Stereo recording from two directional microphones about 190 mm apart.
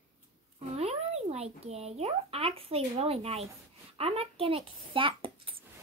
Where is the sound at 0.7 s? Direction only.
35° right (ahead or behind).